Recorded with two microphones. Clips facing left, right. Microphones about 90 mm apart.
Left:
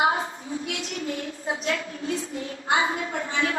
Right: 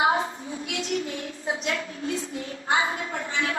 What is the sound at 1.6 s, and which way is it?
A woman's voice, 35° left (ahead or behind).